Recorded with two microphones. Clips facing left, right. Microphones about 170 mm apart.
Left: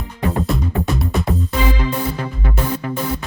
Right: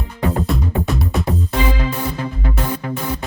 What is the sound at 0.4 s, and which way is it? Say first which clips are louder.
Music: even; centre (ahead or behind).